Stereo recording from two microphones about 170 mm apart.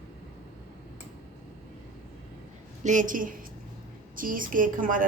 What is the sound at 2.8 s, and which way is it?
A woman's voice, 50° right (ahead or behind).